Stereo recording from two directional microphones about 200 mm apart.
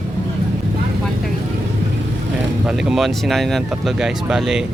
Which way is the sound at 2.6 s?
Centre (ahead or behind).